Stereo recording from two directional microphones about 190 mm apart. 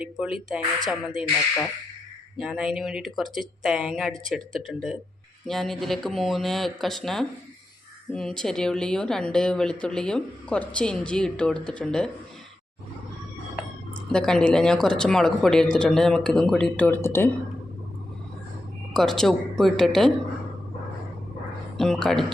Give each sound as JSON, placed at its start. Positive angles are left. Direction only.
{"t": 0.0, "sound": "a woman's voice", "side_deg": -5}
{"t": 2.4, "sound": "a woman's voice", "side_deg": -5}
{"t": 14.1, "sound": "a woman's voice", "side_deg": 5}
{"t": 18.9, "sound": "a woman's voice", "side_deg": 0}
{"t": 21.8, "sound": "a woman's voice", "side_deg": 0}